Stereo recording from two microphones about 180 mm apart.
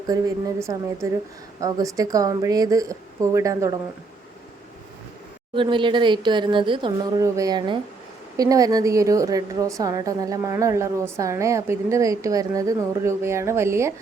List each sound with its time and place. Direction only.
0.1 s speech: 20° right (ahead or behind)
5.5 s a woman's voice: 25° right (ahead or behind)